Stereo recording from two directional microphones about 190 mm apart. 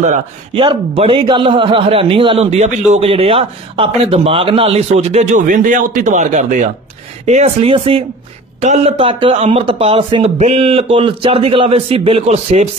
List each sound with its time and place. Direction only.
0.6 s a man's voice: 25° right (ahead or behind)